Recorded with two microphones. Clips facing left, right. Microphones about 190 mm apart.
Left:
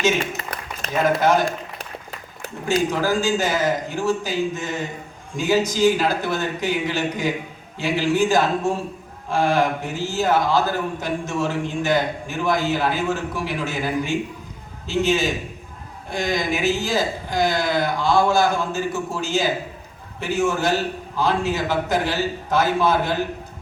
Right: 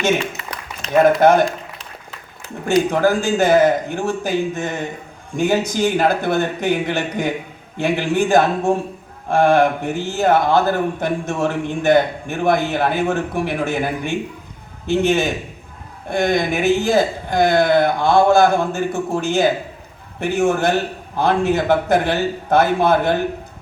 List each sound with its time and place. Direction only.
0.2 s a sound: 55° left (ahead or behind)
1.2 s a man's voice: 55° right (ahead or behind)
2.9 s a man's voice: 55° right (ahead or behind)